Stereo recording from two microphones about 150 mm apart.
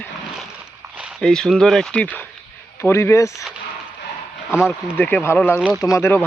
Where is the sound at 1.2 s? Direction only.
5° left (ahead or behind); by 3.4 s 20° left (ahead or behind).